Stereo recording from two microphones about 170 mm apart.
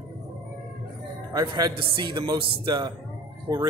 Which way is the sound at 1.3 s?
25° right (ahead or behind).